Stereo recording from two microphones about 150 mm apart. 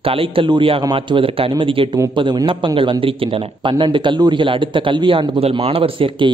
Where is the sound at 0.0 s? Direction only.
35° right (ahead or behind).